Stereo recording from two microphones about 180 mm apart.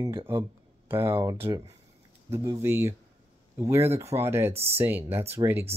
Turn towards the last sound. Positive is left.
turn(degrees=-15)  # may be behind; listen again after turning